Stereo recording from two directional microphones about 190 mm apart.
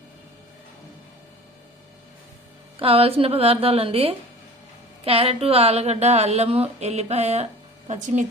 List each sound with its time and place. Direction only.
2.7 s speech: 30° right (ahead or behind)